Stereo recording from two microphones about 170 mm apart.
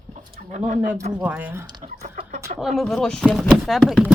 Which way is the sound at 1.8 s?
50° right (ahead or behind).